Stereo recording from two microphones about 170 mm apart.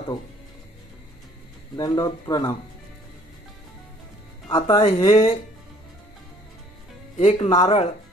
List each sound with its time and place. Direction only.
1.8 s speech: 20° left (ahead or behind)
4.5 s speech: 25° left (ahead or behind)
4.7 s speech: 35° left (ahead or behind)
7.2 s speech: 40° left (ahead or behind)